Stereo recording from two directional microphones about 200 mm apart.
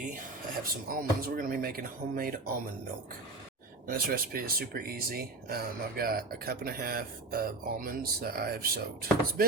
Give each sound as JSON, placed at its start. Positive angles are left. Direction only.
{"t": 0.6, "sound": "speech", "side_deg": -45}
{"t": 3.8, "sound": "speech", "side_deg": -45}